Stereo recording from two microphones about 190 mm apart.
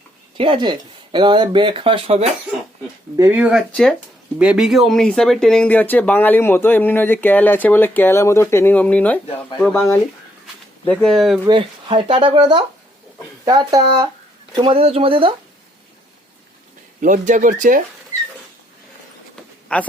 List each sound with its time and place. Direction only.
0.3 s speech: 25° right (ahead or behind)
3.2 s speech: 10° right (ahead or behind)
10.4 s a sound: 5° left (ahead or behind)
11.4 s speech: 25° right (ahead or behind)
17.0 s speech: 45° right (ahead or behind)
19.6 s speech: 5° left (ahead or behind)